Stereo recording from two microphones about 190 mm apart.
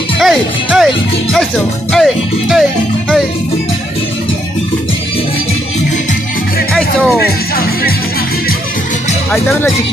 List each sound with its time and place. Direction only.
0.2 s music: centre (ahead or behind)
1.9 s music: centre (ahead or behind)
6.7 s music: centre (ahead or behind)
7.2 s music: 55° left (ahead or behind)